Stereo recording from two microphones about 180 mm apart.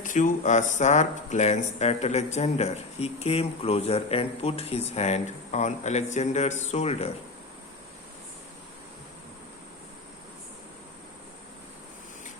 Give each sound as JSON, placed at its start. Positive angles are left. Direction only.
{"t": 0.0, "sound": "speech", "side_deg": 45}